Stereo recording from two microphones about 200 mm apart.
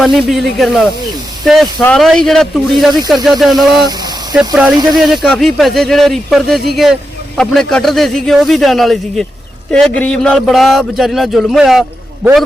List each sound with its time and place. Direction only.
0.0 s speech: centre (ahead or behind)
3.8 s a sound: 20° right (ahead or behind)
4.4 s speech: 5° right (ahead or behind)